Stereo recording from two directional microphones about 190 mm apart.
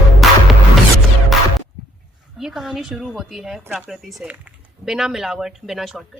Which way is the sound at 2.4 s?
Centre (ahead or behind).